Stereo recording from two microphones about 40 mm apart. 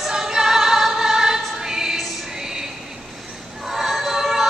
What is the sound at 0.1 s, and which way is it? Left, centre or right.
Music, centre.